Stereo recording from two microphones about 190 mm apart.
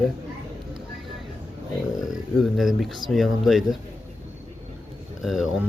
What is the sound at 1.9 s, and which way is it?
A man's voice, centre (ahead or behind).